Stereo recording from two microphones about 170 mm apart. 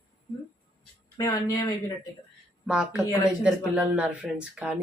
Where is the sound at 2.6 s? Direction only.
5° right (ahead or behind).